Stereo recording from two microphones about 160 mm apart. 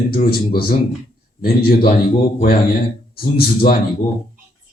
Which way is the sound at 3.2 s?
70° left (ahead or behind).